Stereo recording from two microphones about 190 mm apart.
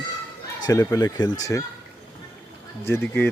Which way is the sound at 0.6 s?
20° left (ahead or behind).